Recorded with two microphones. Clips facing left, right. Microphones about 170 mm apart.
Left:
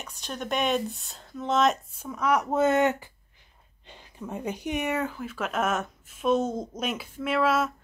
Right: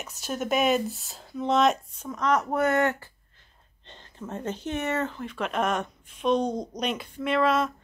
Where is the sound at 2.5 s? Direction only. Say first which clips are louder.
Left 1 dB; 20° left (ahead or behind).